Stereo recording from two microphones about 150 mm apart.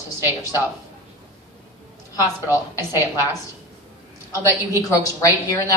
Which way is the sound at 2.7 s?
20° left (ahead or behind).